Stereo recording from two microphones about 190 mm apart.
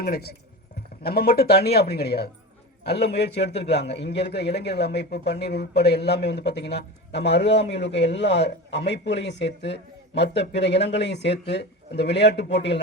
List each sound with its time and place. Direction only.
0.0 s a man's voice: 55° left (ahead or behind)